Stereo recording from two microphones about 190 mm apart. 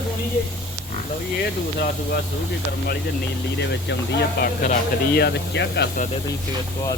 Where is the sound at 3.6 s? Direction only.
65° left (ahead or behind).